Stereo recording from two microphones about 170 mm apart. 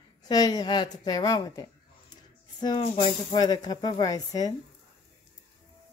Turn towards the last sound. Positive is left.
turn(degrees=20)  # may be behind; listen again after turning